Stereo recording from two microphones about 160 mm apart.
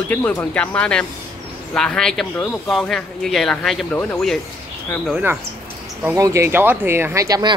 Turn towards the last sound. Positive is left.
turn(degrees=-20)  # may be behind; listen again after turning